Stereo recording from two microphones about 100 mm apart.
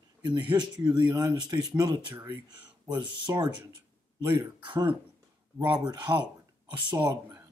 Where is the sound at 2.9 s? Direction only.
40° right (ahead or behind).